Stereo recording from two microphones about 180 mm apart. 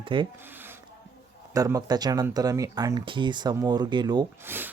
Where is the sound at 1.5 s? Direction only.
20° right (ahead or behind).